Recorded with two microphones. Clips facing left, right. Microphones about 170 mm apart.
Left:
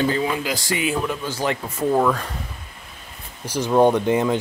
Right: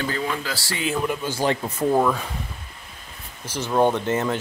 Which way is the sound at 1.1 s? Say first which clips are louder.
Right 1 dB; 10° right (ahead or behind).